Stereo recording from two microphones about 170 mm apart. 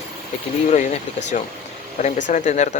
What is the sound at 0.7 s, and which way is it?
Speech, 45° left (ahead or behind).